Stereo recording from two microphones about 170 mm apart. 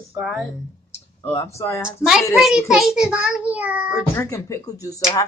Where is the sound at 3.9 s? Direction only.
15° left (ahead or behind).